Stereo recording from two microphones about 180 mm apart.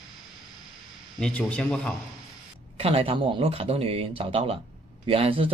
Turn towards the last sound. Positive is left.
turn(degrees=-30)  # may be behind; listen again after turning